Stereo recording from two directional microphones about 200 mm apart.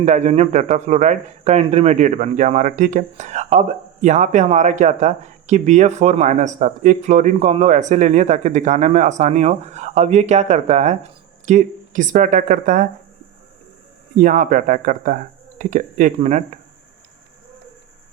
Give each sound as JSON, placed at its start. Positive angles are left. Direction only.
{"t": 0.0, "sound": "speech", "side_deg": -35}
{"t": 14.2, "sound": "speech", "side_deg": -40}